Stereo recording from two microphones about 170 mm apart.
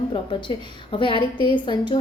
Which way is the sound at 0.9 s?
30° left (ahead or behind).